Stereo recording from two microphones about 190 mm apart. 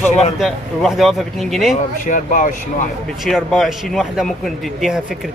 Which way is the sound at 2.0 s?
40° left (ahead or behind).